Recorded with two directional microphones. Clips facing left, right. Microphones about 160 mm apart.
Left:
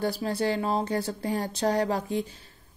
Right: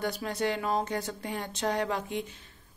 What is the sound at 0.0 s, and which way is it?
Speech, 30° left (ahead or behind).